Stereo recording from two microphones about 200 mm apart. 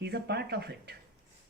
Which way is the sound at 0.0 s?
55° right (ahead or behind).